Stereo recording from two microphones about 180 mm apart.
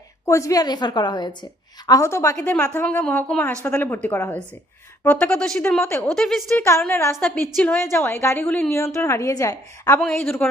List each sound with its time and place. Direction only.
0.3 s a woman's voice: 15° left (ahead or behind); by 6.7 s centre (ahead or behind)
6.7 s a woman's voice: 15° left (ahead or behind)
10.0 s a woman's voice: 5° left (ahead or behind)